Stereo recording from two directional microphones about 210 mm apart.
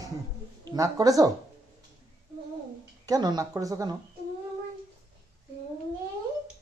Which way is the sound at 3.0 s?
15° right (ahead or behind).